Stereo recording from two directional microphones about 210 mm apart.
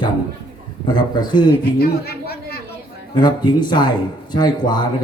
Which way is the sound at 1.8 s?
50° left (ahead or behind).